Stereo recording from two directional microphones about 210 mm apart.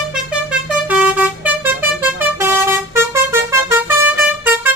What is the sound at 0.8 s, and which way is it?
Vehicle, 5° right (ahead or behind).